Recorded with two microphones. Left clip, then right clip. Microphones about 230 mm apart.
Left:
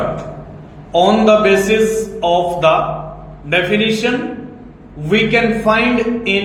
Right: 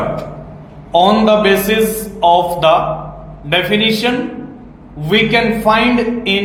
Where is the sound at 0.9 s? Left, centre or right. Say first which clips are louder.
Right 1 dB; right.